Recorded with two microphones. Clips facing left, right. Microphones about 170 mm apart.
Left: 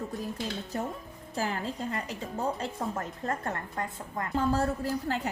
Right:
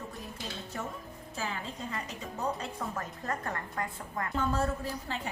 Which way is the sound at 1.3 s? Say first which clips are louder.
Left 6 dB; 40° left (ahead or behind).